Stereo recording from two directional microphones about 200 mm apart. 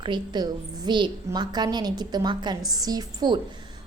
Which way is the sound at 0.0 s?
25° right (ahead or behind).